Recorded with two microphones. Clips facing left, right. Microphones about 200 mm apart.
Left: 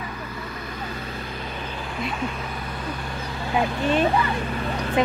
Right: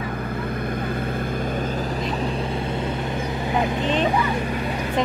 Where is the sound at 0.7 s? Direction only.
55° right (ahead or behind); by 2.3 s 35° right (ahead or behind).